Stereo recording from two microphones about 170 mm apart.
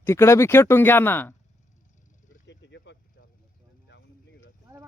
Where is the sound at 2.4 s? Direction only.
90° left.